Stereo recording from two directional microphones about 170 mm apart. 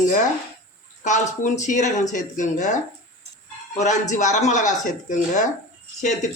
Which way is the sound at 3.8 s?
45° left (ahead or behind).